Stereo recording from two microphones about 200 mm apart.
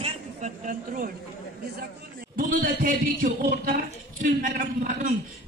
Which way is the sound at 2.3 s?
45° right (ahead or behind).